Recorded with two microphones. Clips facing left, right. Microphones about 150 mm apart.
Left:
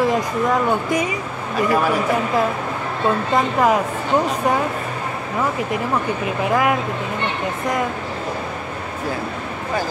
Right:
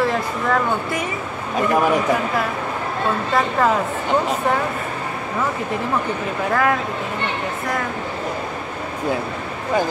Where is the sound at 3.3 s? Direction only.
15° left (ahead or behind).